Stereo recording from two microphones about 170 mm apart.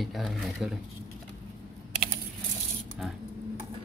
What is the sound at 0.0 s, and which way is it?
Speech, centre (ahead or behind).